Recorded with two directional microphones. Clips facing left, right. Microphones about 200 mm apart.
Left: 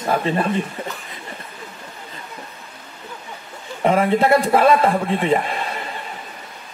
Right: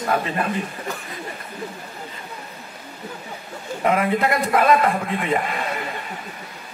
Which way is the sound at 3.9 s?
30° left (ahead or behind).